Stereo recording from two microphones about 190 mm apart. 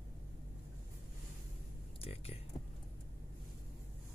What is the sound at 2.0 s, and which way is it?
Music, 30° left (ahead or behind).